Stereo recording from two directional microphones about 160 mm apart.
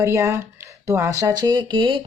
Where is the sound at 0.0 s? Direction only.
20° right (ahead or behind).